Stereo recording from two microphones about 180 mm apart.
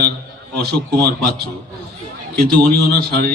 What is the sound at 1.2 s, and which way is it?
A man's voice, 65° right (ahead or behind).